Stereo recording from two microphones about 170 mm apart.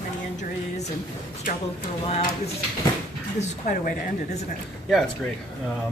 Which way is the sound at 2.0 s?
35° left (ahead or behind).